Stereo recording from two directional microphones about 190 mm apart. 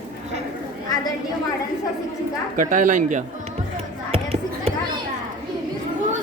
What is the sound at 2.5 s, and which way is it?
Speech, 45° right (ahead or behind).